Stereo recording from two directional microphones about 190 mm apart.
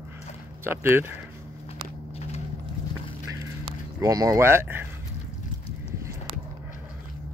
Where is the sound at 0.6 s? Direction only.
10° right (ahead or behind).